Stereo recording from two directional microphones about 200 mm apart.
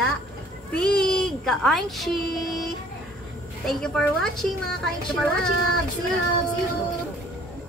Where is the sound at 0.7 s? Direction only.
5° left (ahead or behind).